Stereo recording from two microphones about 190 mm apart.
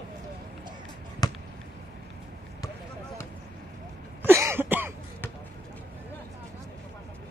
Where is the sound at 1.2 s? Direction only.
20° left (ahead or behind).